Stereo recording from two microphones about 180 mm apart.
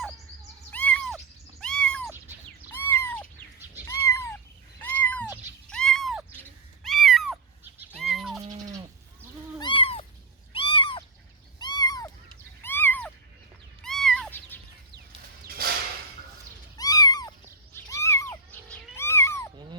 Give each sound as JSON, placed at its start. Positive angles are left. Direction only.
{"t": 0.7, "sound": "cat", "side_deg": 10}
{"t": 6.8, "sound": "owl", "side_deg": 0}
{"t": 7.9, "sound": "sheep", "side_deg": 0}
{"t": 9.6, "sound": "cat", "side_deg": 25}
{"t": 11.6, "sound": "a sound", "side_deg": 20}
{"t": 12.6, "sound": "cat", "side_deg": 10}
{"t": 16.7, "sound": "cat", "side_deg": 20}